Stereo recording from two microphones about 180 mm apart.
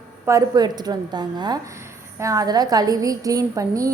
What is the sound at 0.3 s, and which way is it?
A woman's voice, 20° right (ahead or behind).